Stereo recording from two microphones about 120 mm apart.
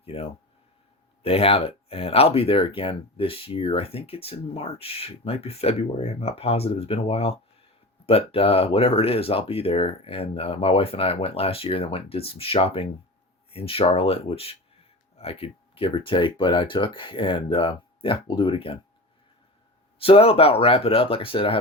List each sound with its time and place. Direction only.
0.0 s speech: 55° left (ahead or behind)
20.0 s speech: 55° left (ahead or behind)